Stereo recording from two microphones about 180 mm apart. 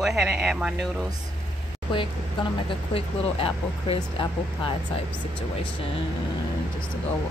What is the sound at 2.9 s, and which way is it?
Speech, 30° left (ahead or behind).